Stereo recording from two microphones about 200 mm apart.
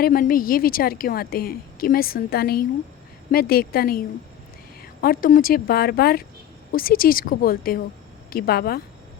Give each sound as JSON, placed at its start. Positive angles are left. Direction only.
{"t": 0.0, "sound": "a woman's voice", "side_deg": 45}